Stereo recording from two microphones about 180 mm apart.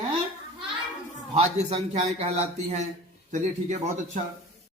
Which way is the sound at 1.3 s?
35° right (ahead or behind).